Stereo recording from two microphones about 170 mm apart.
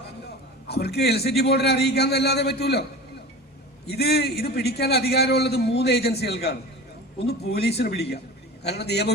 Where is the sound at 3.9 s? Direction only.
70° left (ahead or behind).